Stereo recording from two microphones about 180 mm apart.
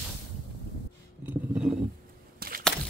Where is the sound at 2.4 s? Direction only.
60° right (ahead or behind).